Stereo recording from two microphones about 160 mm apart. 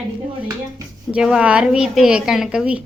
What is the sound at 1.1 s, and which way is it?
A woman's voice, 5° right (ahead or behind).